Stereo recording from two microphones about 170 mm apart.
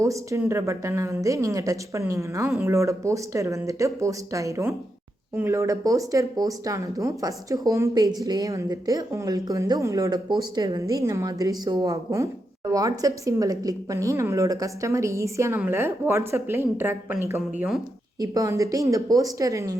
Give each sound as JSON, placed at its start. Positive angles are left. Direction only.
{"t": 0.0, "sound": "a woman's voice", "side_deg": -20}